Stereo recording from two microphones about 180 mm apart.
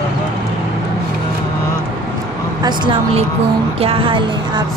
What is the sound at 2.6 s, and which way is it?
Speech, 25° right (ahead or behind).